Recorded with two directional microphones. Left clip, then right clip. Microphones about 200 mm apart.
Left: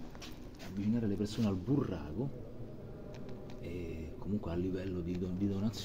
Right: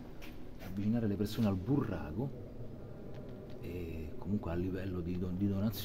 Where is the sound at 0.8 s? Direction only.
25° right (ahead or behind).